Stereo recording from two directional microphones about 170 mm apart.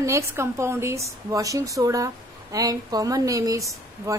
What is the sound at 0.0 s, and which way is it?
A woman's voice, 15° right (ahead or behind).